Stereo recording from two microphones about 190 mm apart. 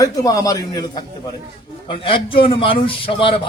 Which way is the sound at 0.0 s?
20° left (ahead or behind).